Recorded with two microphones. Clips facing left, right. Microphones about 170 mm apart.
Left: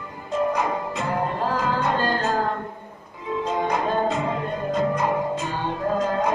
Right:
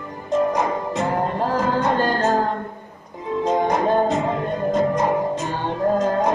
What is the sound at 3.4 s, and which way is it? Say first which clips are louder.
Music: right 5 dB; 45° right (ahead or behind).